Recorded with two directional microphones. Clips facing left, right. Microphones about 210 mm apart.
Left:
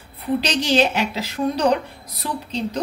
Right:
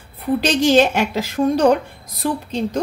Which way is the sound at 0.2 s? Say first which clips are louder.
Right 5 dB; 45° right (ahead or behind).